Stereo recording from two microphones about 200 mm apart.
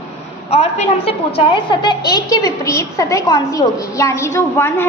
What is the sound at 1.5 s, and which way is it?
A woman's voice, 20° left (ahead or behind).